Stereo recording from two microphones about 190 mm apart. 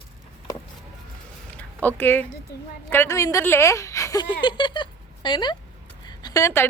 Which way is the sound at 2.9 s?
15° left (ahead or behind).